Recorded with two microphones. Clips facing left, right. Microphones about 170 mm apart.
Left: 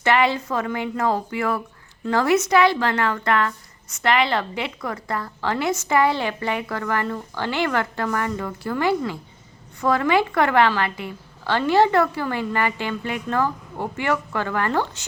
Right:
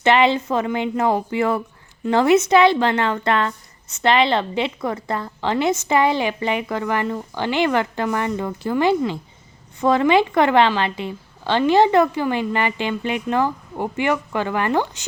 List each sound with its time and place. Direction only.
0.0 s a woman's voice: 20° right (ahead or behind)